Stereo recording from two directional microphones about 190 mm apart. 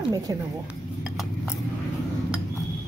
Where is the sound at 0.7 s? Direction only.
5° right (ahead or behind).